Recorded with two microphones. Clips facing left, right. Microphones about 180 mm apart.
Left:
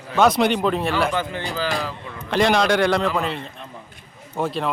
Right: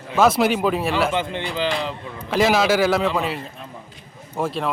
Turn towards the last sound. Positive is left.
turn(degrees=0)  # may be behind; listen again after turning